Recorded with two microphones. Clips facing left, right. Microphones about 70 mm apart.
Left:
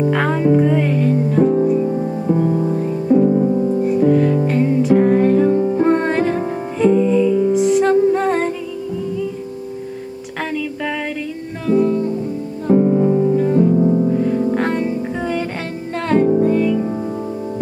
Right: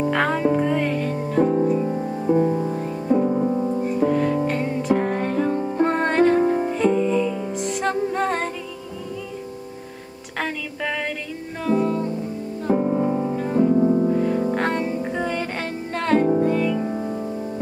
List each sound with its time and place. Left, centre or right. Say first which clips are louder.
0.0 s music: left 4 dB; centre
11.6 s music: left 5 dB; centre